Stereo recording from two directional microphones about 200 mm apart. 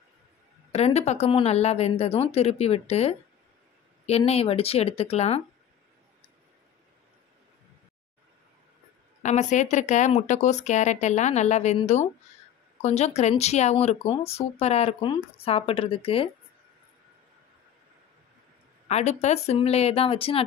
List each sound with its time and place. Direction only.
0.7 s speech: 30° left (ahead or behind)
9.2 s speech: 35° left (ahead or behind)
18.9 s speech: 35° left (ahead or behind)